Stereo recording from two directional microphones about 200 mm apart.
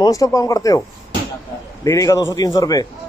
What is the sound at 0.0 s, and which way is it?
Speech, 15° left (ahead or behind).